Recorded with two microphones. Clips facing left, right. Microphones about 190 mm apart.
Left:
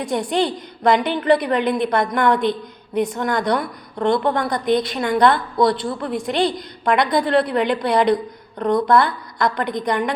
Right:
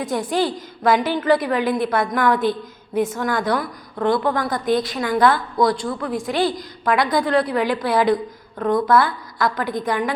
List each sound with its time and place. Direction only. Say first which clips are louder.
0.0 s a woman's voice: left 1 dB; centre (ahead or behind)
3.9 s a woman's voice: left 1 dB; 25° left (ahead or behind)
4.4 s a woman's voice: left 1 dB; centre (ahead or behind)